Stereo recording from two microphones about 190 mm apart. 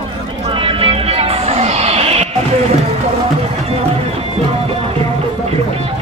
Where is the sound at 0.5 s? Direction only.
30° right (ahead or behind).